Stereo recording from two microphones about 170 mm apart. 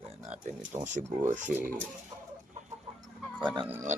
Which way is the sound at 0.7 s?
30° right (ahead or behind).